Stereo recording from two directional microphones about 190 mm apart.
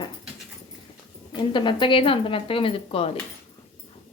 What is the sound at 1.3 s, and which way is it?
A woman's voice, 25° left (ahead or behind).